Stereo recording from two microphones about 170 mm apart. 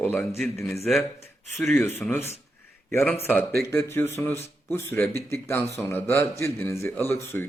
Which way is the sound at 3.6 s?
15° left (ahead or behind).